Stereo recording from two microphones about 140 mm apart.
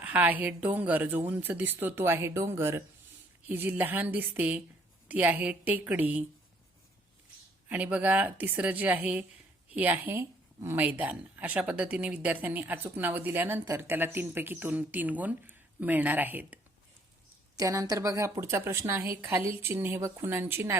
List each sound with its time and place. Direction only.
0.0 s a woman's voice: 10° right (ahead or behind)
7.7 s a woman's voice: 10° right (ahead or behind)
17.6 s a woman's voice: 25° right (ahead or behind)